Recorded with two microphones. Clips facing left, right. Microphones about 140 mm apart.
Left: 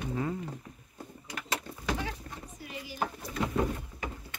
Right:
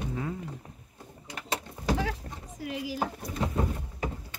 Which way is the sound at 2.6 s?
90° right.